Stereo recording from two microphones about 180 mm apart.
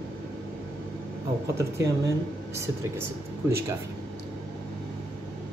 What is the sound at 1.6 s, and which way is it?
Speech, 15° right (ahead or behind).